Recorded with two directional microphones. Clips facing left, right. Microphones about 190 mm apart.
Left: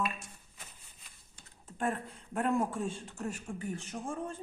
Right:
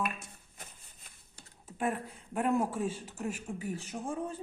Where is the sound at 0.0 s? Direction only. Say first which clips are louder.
Even; 50° right (ahead or behind).